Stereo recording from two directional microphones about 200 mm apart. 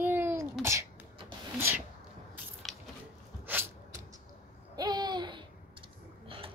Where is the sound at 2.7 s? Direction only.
Centre (ahead or behind).